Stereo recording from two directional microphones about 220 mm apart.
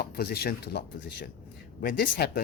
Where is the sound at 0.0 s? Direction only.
45° left (ahead or behind).